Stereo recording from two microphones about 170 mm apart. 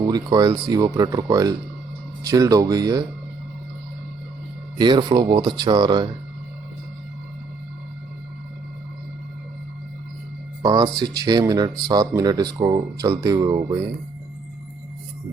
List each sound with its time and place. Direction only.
0.0 s speech: 25° right (ahead or behind)
4.8 s speech: 25° right (ahead or behind)
10.6 s speech: 25° right (ahead or behind)